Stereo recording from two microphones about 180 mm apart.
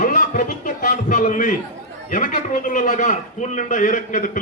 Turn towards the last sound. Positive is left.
turn(degrees=45)  # may be behind; listen again after turning